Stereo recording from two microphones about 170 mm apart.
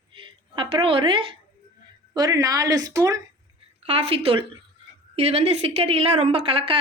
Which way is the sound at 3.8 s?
35° right (ahead or behind).